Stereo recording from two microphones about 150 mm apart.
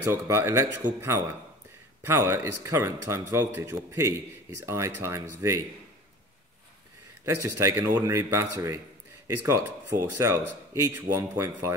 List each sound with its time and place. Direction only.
0.0 s speech: 15° right (ahead or behind)
7.2 s speech: 20° right (ahead or behind)